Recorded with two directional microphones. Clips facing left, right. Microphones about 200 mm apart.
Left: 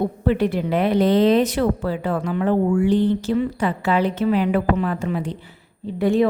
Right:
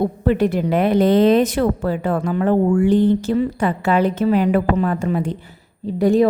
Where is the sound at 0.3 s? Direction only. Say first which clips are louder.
Right 2 dB; 45° right (ahead or behind).